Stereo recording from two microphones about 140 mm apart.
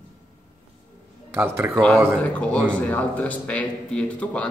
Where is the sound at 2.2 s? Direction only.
10° left (ahead or behind).